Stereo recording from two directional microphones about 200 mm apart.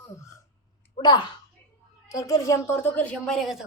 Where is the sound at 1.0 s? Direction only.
20° left (ahead or behind).